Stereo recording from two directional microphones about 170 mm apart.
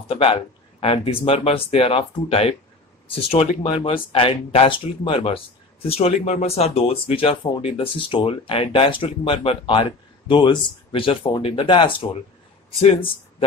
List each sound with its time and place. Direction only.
0.1 s speech: 35° left (ahead or behind)